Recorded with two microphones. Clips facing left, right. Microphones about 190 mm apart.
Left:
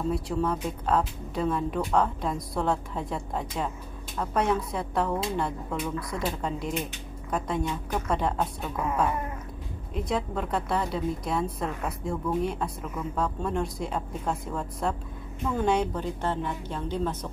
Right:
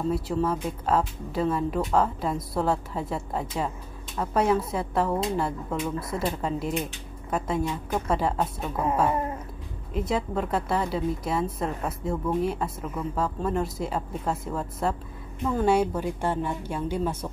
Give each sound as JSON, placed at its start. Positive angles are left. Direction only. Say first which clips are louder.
{"t": 0.1, "sound": "speech", "louder": "right 2 dB", "side_deg": -5}
{"t": 9.1, "sound": "a sound", "louder": "right 5 dB", "side_deg": -30}
{"t": 9.9, "sound": "a woman's voice", "louder": "right 2 dB", "side_deg": 0}